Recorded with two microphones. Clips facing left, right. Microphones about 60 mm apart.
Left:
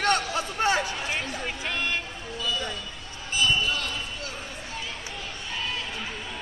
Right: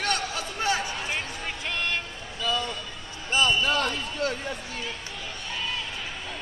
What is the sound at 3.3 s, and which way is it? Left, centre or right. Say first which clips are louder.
Basketball bounce: right 2 dB; right.